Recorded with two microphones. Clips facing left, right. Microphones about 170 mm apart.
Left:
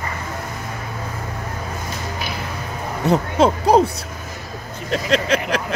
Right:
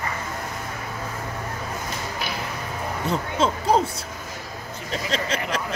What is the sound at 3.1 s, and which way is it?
Speech, 65° left (ahead or behind).